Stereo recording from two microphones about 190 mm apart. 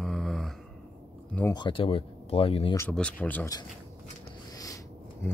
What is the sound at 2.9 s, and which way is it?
Speech, 5° left (ahead or behind).